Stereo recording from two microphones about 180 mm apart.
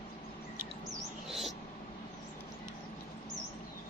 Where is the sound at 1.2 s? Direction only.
Centre (ahead or behind).